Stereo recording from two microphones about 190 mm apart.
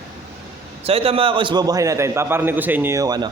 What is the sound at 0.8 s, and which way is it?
A man's voice, 30° right (ahead or behind).